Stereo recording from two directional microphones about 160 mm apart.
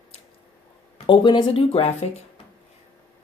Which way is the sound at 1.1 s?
30° left (ahead or behind).